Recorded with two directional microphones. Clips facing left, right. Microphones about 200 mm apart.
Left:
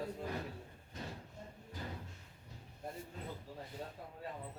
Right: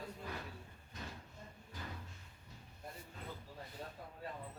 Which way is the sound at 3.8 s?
25° left (ahead or behind).